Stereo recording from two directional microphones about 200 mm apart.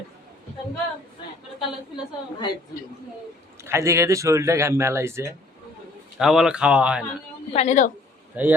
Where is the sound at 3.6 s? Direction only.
15° right (ahead or behind).